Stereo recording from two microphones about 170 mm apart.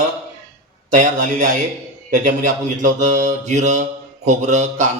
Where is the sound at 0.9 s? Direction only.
50° right (ahead or behind).